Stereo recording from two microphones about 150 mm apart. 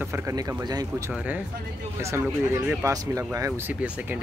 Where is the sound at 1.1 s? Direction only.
10° right (ahead or behind).